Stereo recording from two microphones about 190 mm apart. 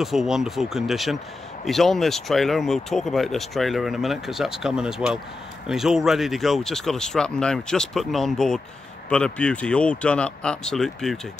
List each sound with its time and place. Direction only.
0.0 s speech: centre (ahead or behind)